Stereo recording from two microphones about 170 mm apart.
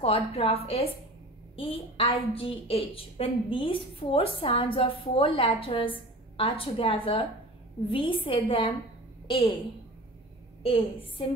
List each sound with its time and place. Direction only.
0.0 s a woman's voice: 35° left (ahead or behind)
10.6 s a woman's voice: 35° left (ahead or behind)